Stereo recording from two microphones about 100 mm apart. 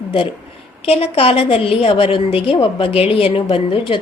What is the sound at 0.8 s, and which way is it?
A woman's voice, 80° left.